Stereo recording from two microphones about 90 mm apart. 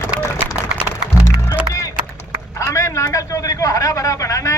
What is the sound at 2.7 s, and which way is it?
A man's voice, 35° left (ahead or behind).